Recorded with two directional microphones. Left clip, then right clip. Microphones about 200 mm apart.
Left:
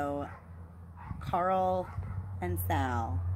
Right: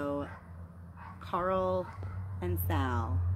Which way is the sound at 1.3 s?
20° left (ahead or behind).